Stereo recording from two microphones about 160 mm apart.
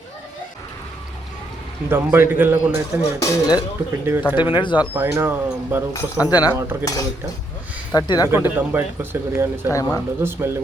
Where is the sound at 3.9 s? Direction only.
15° right (ahead or behind).